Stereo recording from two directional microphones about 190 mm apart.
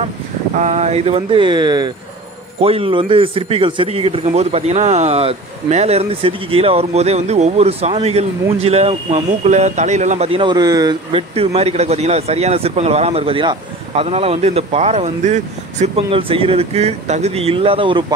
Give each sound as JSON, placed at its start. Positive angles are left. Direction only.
{"t": 0.6, "sound": "speech", "side_deg": -35}